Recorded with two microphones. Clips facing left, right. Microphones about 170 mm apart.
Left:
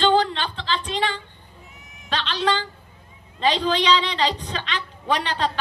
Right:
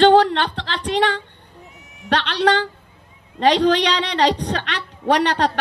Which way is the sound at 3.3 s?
70° right (ahead or behind).